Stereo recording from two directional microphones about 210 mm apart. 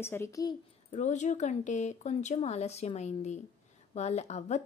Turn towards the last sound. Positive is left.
turn(degrees=35)  # may be behind; listen again after turning